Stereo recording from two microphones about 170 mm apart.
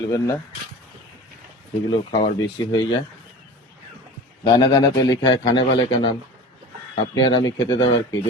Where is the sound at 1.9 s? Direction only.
30° left (ahead or behind).